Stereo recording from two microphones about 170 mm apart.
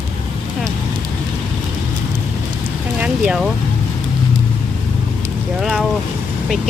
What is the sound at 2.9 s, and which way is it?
Speech, 5° right (ahead or behind).